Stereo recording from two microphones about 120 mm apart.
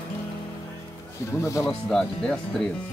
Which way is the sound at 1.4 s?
25° left (ahead or behind).